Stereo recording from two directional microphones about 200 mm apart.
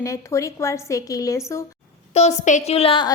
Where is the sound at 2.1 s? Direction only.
35° left (ahead or behind).